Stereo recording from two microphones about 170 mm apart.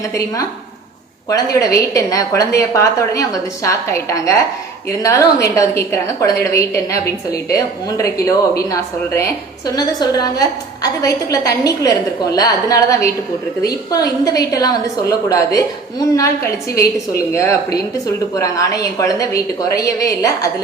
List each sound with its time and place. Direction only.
0.0 s a woman's voice: 20° left (ahead or behind)